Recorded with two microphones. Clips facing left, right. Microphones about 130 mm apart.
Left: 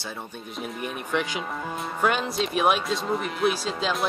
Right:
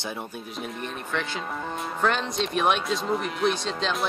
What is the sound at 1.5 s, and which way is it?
Speech, centre (ahead or behind).